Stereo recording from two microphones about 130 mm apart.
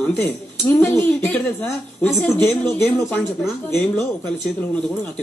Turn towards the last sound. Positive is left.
turn(degrees=15)  # may be behind; listen again after turning